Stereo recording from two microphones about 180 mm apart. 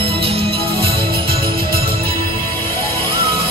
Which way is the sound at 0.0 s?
30° right (ahead or behind).